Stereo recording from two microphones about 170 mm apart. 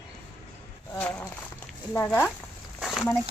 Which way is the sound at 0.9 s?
10° left (ahead or behind).